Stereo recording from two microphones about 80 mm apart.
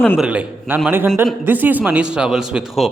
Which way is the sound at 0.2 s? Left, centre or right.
Centre.